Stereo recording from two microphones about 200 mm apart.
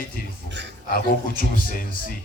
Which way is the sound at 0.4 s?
60° right (ahead or behind).